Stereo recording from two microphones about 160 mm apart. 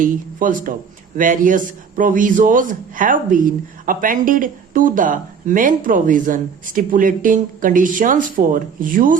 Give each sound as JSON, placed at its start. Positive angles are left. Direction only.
{"t": 0.0, "sound": "a man's voice", "side_deg": -55}